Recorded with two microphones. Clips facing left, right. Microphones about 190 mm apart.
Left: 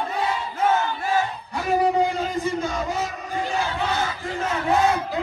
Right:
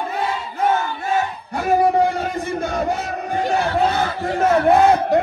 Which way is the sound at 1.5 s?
60° right (ahead or behind).